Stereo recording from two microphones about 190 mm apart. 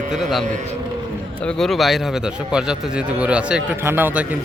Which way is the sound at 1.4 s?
5° left (ahead or behind).